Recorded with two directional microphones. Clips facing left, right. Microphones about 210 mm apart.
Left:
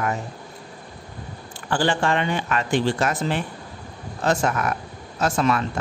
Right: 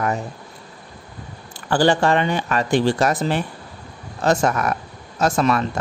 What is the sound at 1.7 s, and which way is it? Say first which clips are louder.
A man's voice: right 5 dB; 40° right (ahead or behind).